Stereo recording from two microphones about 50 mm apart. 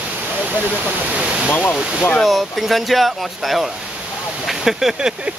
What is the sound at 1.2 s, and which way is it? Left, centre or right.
Speech, centre.